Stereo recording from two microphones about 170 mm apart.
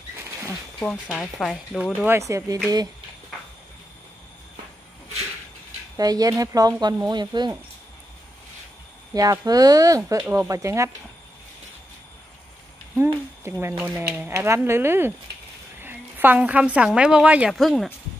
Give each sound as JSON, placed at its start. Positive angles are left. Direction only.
{"t": 1.4, "sound": "speech", "side_deg": 0}
{"t": 2.0, "sound": "speech", "side_deg": -15}
{"t": 5.9, "sound": "speech", "side_deg": -20}
{"t": 9.1, "sound": "speech", "side_deg": -20}
{"t": 12.9, "sound": "a woman's voice", "side_deg": -15}